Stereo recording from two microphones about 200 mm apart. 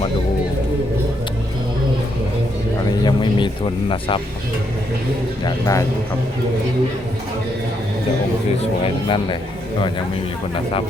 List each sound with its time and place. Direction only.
3.0 s a sound: 20° left (ahead or behind)
5.5 s a man's voice: 15° left (ahead or behind)
9.0 s speech: 25° left (ahead or behind)